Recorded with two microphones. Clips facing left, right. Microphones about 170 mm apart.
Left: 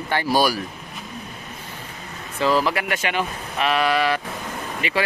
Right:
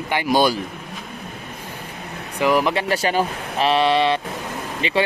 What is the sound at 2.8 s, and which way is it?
Speech, 35° right (ahead or behind).